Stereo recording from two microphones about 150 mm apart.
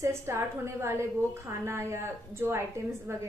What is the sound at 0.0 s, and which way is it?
A woman's voice, 20° right (ahead or behind).